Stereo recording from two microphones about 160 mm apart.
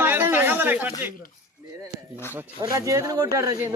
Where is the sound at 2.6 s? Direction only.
20° right (ahead or behind).